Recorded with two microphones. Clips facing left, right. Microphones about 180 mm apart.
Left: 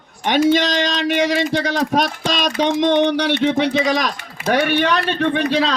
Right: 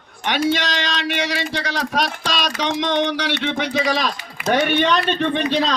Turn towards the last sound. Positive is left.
turn(degrees=10)  # may be behind; listen again after turning